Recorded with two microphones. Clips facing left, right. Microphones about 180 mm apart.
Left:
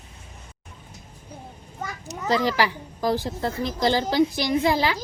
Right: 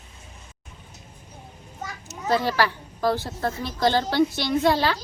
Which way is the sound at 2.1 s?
15° left (ahead or behind).